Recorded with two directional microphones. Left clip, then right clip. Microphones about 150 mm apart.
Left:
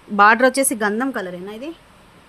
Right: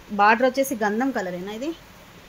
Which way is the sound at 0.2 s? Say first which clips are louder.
Left 5 dB; 45° left (ahead or behind).